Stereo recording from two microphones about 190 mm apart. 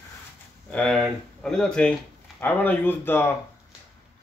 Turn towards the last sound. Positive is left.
turn(degrees=10)  # may be behind; listen again after turning